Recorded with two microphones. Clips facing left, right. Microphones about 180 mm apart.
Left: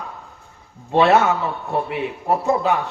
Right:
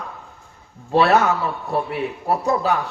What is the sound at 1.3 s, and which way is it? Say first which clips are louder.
Speech: even; centre (ahead or behind).